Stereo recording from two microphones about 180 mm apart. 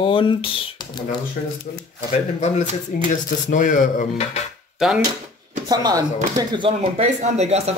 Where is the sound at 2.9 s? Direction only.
50° left (ahead or behind).